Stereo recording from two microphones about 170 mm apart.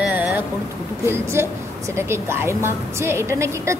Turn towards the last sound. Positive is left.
turn(degrees=-15)  # may be behind; listen again after turning